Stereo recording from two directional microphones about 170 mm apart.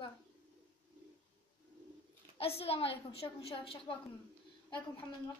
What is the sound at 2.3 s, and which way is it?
A woman's voice, 35° left (ahead or behind).